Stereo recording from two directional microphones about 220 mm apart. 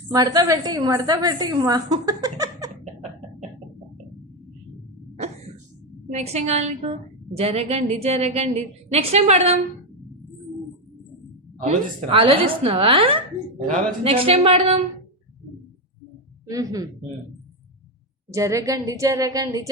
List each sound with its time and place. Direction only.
0.1 s a woman's voice: 15° right (ahead or behind)
6.1 s a woman's voice: 30° right (ahead or behind)
11.6 s a woman's voice: 25° right (ahead or behind)
13.7 s a woman's voice: 35° right (ahead or behind)
16.5 s a woman's voice: 15° right (ahead or behind)
18.3 s a woman's voice: 15° right (ahead or behind)